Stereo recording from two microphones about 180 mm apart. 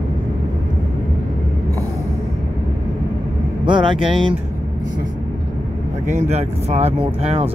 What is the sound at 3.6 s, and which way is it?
Speech, 25° right (ahead or behind).